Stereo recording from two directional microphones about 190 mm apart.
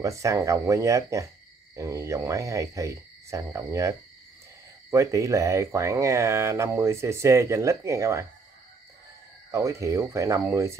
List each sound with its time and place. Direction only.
0.0 s speech: 15° right (ahead or behind)
4.9 s speech: 15° right (ahead or behind)
9.5 s speech: 15° right (ahead or behind)